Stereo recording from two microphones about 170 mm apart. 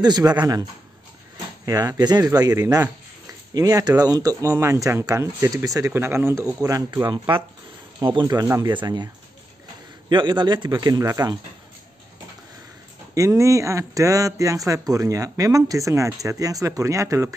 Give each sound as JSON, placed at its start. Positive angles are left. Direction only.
{"t": 0.0, "sound": "speech", "side_deg": -25}
{"t": 1.7, "sound": "speech", "side_deg": -20}
{"t": 13.1, "sound": "speech", "side_deg": -20}